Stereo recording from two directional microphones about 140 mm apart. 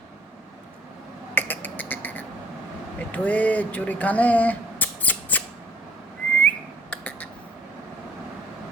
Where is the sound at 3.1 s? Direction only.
10° left (ahead or behind).